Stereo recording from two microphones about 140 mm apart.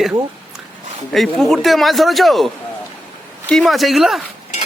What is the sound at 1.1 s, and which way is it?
A man's voice, centre (ahead or behind).